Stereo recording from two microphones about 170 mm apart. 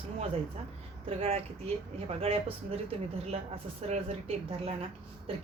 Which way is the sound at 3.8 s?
40° right (ahead or behind).